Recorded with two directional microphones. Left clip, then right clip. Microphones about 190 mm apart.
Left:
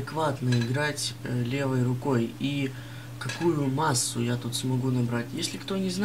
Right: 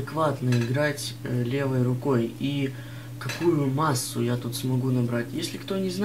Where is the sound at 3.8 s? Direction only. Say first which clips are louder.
Right 1 dB; 35° left (ahead or behind).